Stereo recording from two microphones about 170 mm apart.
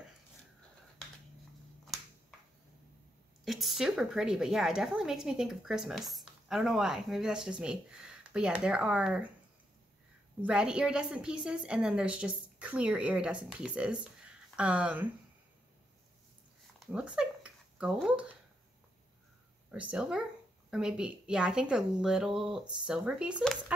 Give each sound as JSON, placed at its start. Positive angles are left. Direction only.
{"t": 3.4, "sound": "a woman's voice", "side_deg": 0}
{"t": 10.4, "sound": "a woman's voice", "side_deg": -5}
{"t": 16.8, "sound": "a sound", "side_deg": -5}
{"t": 17.9, "sound": "a woman's voice", "side_deg": -5}
{"t": 19.7, "sound": "a woman's voice", "side_deg": -5}